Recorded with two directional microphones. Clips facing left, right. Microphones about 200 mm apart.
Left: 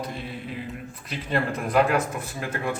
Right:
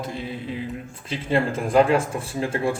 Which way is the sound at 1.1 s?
25° right (ahead or behind).